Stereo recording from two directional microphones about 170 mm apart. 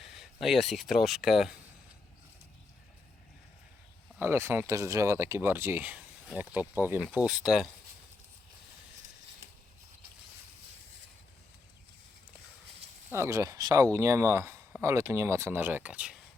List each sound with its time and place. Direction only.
0.0 s speech: centre (ahead or behind)
4.2 s speech: 15° right (ahead or behind)
13.1 s speech: 15° right (ahead or behind)